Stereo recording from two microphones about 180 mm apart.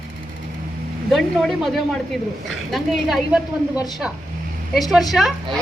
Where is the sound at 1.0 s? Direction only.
Centre (ahead or behind).